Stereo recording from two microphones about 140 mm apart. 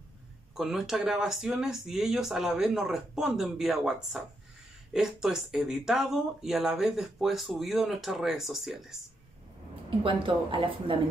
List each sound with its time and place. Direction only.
0.6 s speech: centre (ahead or behind)
9.8 s a woman's voice: 40° right (ahead or behind)